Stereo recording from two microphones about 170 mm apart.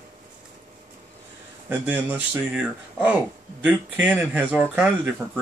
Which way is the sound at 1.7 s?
10° right (ahead or behind).